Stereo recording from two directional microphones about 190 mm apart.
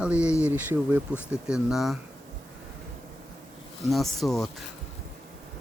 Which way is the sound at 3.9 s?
Centre (ahead or behind).